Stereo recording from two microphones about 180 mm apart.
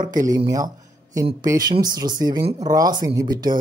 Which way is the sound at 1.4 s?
20° right (ahead or behind).